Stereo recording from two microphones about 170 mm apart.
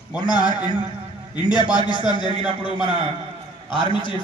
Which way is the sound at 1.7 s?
25° left (ahead or behind).